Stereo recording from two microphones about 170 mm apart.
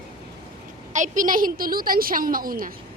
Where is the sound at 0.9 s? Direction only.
50° right (ahead or behind).